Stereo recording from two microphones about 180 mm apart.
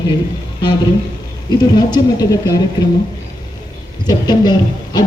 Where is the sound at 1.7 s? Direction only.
20° left (ahead or behind).